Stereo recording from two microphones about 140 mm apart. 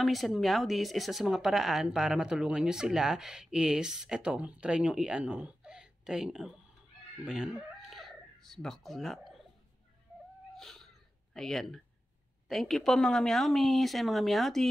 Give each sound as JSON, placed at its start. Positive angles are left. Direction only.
{"t": 0.0, "sound": "speech", "side_deg": 0}
{"t": 10.5, "sound": "wheeze", "side_deg": 0}
{"t": 11.3, "sound": "speech", "side_deg": 0}